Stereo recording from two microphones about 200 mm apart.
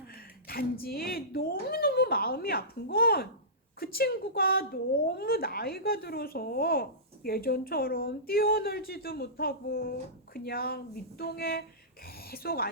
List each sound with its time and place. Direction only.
0.4 s a woman's voice: 50° left (ahead or behind)